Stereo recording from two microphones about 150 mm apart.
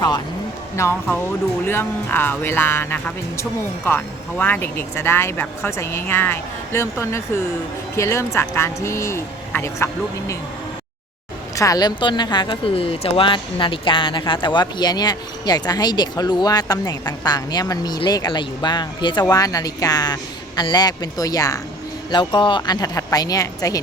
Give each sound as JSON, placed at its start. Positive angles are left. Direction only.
{"t": 0.8, "sound": "speech", "side_deg": 15}
{"t": 11.5, "sound": "speech", "side_deg": 20}